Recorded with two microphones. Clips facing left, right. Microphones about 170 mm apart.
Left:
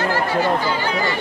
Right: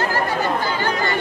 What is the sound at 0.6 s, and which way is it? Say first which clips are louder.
Chatter: left 1 dB; 50° right (ahead or behind).